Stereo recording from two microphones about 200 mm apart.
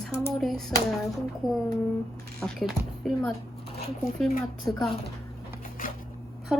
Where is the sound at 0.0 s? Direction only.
Centre (ahead or behind).